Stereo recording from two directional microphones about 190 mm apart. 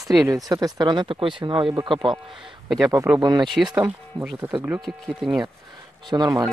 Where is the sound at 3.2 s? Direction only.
20° right (ahead or behind).